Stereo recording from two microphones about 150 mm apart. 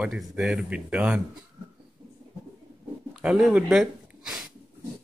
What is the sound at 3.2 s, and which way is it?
Speech, 5° right (ahead or behind).